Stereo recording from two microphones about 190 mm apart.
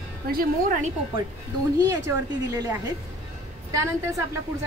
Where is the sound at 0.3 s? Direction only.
45° right (ahead or behind).